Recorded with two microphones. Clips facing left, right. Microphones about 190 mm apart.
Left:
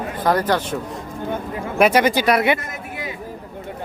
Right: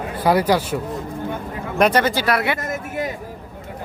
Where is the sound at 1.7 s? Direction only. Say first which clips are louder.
Left 1 dB; 10° left (ahead or behind).